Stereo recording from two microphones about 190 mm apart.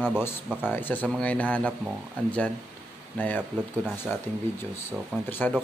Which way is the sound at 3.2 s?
10° left (ahead or behind).